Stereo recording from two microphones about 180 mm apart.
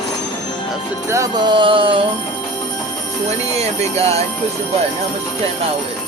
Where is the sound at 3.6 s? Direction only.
35° right (ahead or behind).